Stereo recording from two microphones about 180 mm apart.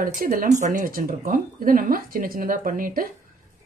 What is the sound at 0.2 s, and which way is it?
A woman's voice, 50° right (ahead or behind).